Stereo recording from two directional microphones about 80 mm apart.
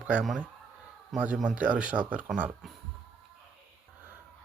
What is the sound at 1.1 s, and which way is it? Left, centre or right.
Speech, centre.